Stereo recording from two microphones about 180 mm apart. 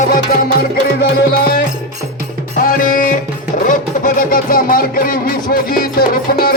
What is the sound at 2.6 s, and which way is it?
Music, 50° left (ahead or behind).